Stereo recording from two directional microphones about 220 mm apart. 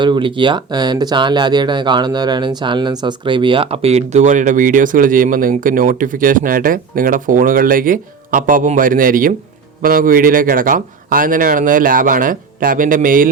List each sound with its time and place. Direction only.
0.0 s speech: 20° right (ahead or behind); by 13.3 s 40° right (ahead or behind)